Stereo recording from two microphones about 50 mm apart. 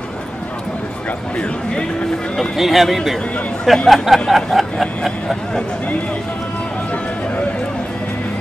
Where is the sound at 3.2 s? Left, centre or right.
Left.